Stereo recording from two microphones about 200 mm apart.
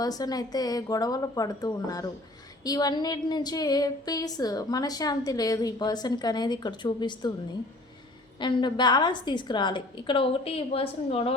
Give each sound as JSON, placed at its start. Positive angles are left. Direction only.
{"t": 0.0, "sound": "a woman's voice", "side_deg": 20}
{"t": 8.4, "sound": "a woman's voice", "side_deg": 25}